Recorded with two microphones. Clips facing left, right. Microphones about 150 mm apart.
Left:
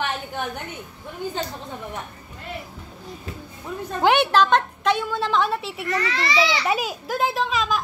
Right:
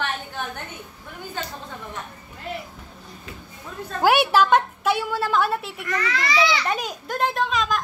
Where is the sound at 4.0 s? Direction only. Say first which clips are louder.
Even; 10° right (ahead or behind).